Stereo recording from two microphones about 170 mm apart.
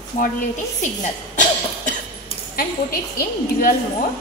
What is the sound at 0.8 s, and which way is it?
Speech, 45° left (ahead or behind).